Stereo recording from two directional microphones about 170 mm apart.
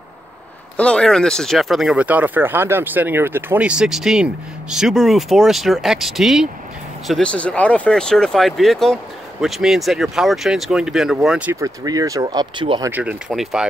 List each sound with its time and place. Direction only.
0.7 s speech: 5° left (ahead or behind)
11.6 s speech: 20° right (ahead or behind)
12.9 s speech: 10° right (ahead or behind)